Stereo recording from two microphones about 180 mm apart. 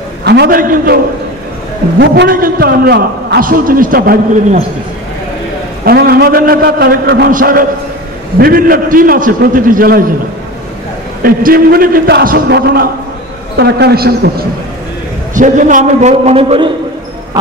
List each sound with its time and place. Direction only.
0.2 s a man's voice: 65° right (ahead or behind); by 0.9 s 50° right (ahead or behind)
2.0 s a man's voice: 55° right (ahead or behind)
5.9 s a man's voice: 60° right (ahead or behind)
11.2 s a man's voice: 55° right (ahead or behind)
15.3 s a man's voice: 45° right (ahead or behind)